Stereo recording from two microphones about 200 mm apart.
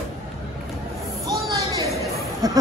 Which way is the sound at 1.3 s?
20° right (ahead or behind).